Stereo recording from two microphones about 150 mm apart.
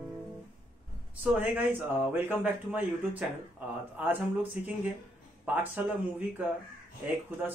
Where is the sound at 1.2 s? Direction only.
10° right (ahead or behind).